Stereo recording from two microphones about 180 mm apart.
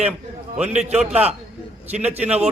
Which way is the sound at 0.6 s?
35° right (ahead or behind).